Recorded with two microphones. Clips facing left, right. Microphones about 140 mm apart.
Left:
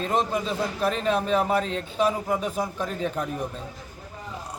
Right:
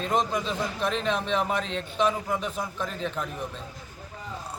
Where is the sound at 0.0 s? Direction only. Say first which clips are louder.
Left 1 dB; centre (ahead or behind).